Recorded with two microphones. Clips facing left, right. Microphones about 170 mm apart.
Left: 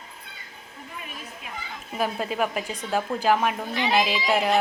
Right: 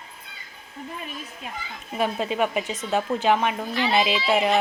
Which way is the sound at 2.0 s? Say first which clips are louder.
Right 2 dB; centre (ahead or behind).